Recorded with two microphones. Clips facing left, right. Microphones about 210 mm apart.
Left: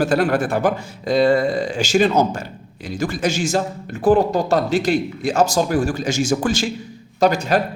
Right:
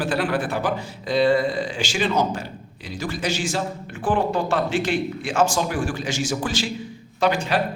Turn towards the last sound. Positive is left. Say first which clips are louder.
# left 4 dB
turn(degrees=40)  # may be behind; listen again after turning